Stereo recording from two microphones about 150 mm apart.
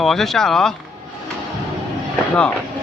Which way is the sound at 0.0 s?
Centre (ahead or behind).